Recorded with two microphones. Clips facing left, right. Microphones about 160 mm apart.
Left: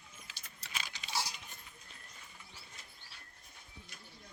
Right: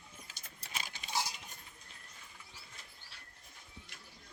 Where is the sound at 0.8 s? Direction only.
45° right (ahead or behind).